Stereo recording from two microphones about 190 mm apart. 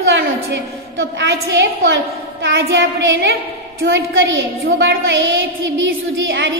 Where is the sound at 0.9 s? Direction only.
70° right (ahead or behind).